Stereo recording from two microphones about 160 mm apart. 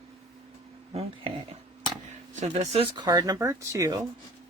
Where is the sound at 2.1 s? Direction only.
45° right (ahead or behind).